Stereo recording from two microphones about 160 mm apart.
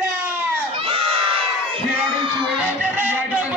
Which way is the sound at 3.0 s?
10° right (ahead or behind).